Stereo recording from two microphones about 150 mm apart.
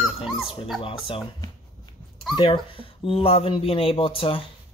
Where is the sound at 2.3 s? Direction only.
40° left (ahead or behind).